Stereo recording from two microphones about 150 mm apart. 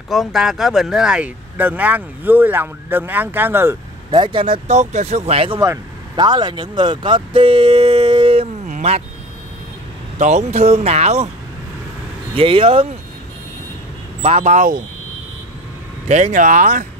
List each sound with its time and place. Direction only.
0.1 s speech: centre (ahead or behind)
4.1 s speech: 30° right (ahead or behind)
4.6 s speech: 50° right (ahead or behind)
5.6 s speech: 25° right (ahead or behind)
8.6 s dog: 50° right (ahead or behind)
10.1 s speech: 50° right (ahead or behind)
12.4 s speech: 35° right (ahead or behind)
14.2 s speech: 45° right (ahead or behind)
16.1 s speech: 50° right (ahead or behind)